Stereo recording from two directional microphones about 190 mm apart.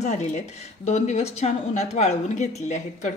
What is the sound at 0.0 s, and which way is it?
A woman's voice, 40° left (ahead or behind).